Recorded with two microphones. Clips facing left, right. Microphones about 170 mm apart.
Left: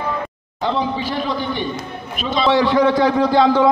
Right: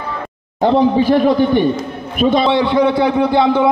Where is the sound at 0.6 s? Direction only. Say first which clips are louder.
Right 9 dB; 50° right (ahead or behind).